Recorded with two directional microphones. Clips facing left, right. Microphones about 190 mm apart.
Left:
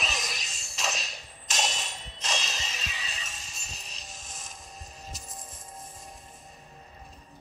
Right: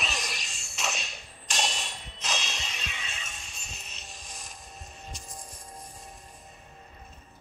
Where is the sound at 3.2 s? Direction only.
Centre (ahead or behind).